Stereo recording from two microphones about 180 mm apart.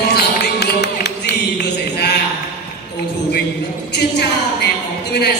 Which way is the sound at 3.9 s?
70° left (ahead or behind).